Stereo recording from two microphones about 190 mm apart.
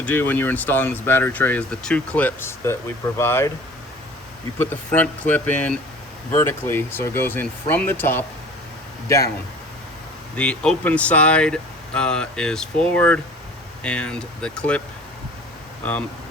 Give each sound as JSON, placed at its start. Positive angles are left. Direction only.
{"t": 0.0, "sound": "speech", "side_deg": 10}
{"t": 4.5, "sound": "speech", "side_deg": 10}
{"t": 10.3, "sound": "speech", "side_deg": 5}
{"t": 15.8, "sound": "speech", "side_deg": 10}